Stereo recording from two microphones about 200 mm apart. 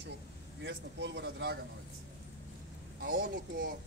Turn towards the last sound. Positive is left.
turn(degrees=-45)  # may be behind; listen again after turning